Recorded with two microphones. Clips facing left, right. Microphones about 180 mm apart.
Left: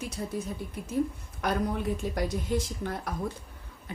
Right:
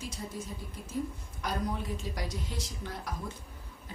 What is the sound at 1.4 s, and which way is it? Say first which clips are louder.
A woman's voice: left 5 dB; 60° left (ahead or behind).